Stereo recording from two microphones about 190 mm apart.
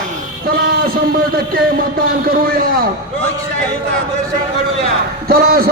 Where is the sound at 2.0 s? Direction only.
50° right (ahead or behind).